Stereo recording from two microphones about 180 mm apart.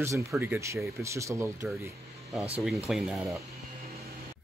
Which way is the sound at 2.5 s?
Centre (ahead or behind).